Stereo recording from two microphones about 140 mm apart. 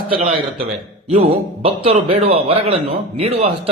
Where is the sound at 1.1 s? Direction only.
45° right (ahead or behind).